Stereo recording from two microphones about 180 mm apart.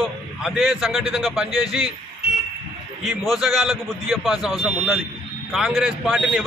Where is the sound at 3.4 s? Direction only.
Centre (ahead or behind).